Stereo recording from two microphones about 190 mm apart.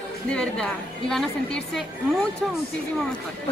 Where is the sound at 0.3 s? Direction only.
5° left (ahead or behind).